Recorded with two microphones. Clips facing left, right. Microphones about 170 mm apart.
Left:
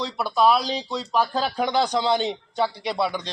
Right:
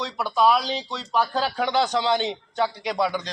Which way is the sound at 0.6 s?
35° left (ahead or behind).